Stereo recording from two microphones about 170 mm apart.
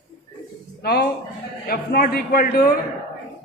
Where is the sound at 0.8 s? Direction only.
70° left (ahead or behind).